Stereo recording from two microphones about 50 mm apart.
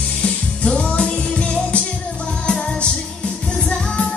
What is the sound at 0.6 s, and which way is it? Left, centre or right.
Music, left.